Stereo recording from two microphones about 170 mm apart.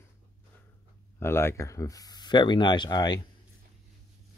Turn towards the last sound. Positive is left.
turn(degrees=25)  # may be behind; listen again after turning